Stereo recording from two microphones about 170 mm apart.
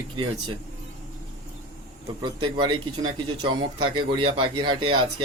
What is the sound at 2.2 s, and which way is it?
Speech, 25° right (ahead or behind).